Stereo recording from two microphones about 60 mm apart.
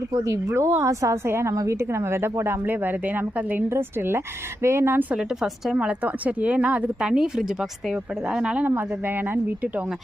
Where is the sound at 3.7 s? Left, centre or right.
Right.